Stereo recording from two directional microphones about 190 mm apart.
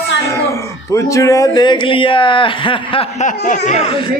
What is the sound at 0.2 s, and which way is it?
Speech, 15° left (ahead or behind).